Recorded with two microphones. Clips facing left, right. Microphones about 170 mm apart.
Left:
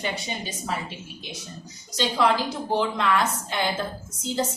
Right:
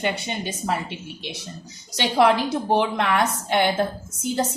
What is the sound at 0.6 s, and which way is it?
A woman's voice, 70° right (ahead or behind).